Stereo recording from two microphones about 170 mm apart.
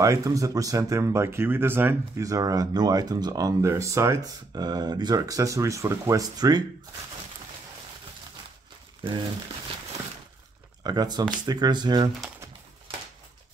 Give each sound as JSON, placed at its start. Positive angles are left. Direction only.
{"t": 0.0, "sound": "speech", "side_deg": -20}
{"t": 10.8, "sound": "speech", "side_deg": -25}